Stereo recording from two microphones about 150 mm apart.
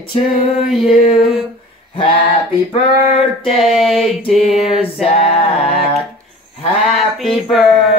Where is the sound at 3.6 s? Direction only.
Centre (ahead or behind).